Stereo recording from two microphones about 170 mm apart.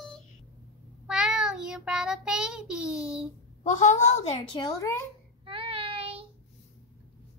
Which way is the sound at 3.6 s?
45° left (ahead or behind).